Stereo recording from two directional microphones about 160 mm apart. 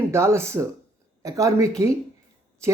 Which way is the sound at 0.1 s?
15° right (ahead or behind).